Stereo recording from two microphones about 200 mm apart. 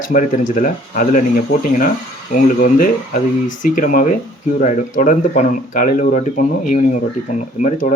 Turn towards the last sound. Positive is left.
turn(degrees=40)  # may be behind; listen again after turning